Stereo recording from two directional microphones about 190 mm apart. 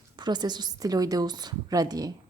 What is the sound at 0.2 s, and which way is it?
A woman's voice, 20° right (ahead or behind).